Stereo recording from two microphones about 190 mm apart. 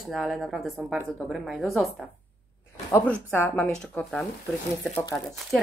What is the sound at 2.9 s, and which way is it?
Speech, 10° left (ahead or behind).